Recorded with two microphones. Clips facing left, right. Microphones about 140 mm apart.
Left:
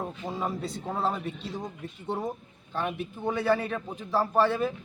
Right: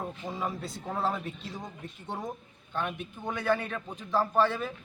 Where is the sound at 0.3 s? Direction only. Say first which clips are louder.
Left 4 dB; centre (ahead or behind).